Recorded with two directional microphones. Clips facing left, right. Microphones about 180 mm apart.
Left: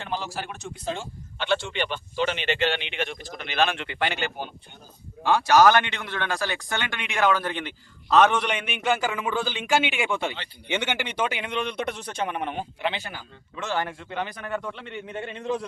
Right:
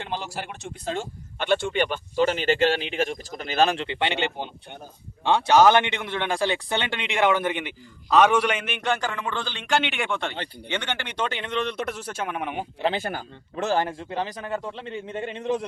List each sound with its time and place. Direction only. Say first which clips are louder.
1.4 s speech: right 3 dB; 50° right (ahead or behind)
3.8 s a man's voice: right 2 dB; 25° right (ahead or behind); by 12.6 s 5° right (ahead or behind)
12.8 s speech: right 6 dB; 45° right (ahead or behind)
13.6 s a man's voice: right 5 dB; 35° right (ahead or behind)